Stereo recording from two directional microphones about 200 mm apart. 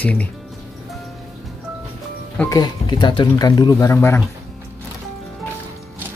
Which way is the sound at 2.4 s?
20° left (ahead or behind).